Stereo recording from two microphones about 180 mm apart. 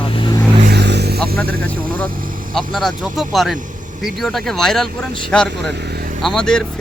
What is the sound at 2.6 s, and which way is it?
Speech, centre (ahead or behind).